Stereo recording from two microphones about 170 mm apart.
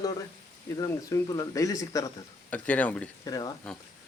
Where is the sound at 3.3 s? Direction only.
20° left (ahead or behind).